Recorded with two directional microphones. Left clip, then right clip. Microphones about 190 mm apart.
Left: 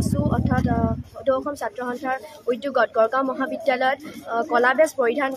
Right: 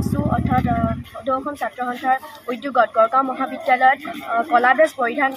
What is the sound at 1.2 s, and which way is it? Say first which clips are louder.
Speech: even; 30° left (ahead or behind).